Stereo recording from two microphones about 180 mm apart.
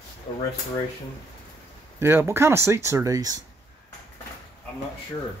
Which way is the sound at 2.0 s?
15° right (ahead or behind).